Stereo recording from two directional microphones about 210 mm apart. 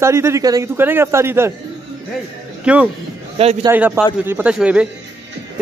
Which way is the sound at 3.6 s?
10° right (ahead or behind).